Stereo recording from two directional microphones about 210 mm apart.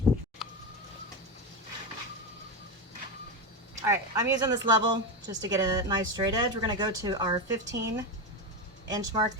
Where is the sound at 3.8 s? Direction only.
15° right (ahead or behind).